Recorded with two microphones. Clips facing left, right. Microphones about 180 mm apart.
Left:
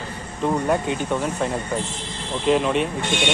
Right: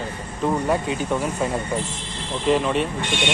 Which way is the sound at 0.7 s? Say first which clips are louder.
Even; 5° right (ahead or behind).